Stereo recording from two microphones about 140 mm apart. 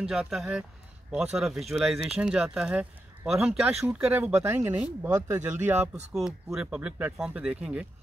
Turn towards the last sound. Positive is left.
turn(degrees=-10)  # may be behind; listen again after turning